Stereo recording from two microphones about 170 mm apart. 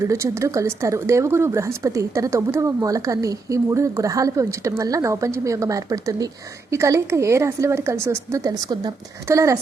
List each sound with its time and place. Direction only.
0.0 s speech: 20° right (ahead or behind)